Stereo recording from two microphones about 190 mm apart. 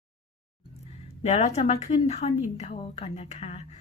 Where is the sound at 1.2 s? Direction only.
35° left (ahead or behind).